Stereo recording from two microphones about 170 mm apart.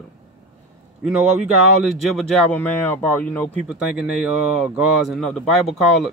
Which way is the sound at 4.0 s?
5° right (ahead or behind).